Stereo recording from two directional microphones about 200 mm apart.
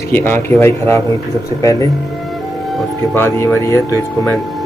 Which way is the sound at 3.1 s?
10° left (ahead or behind).